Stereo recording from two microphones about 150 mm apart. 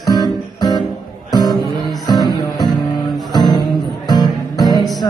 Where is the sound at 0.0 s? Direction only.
25° left (ahead or behind).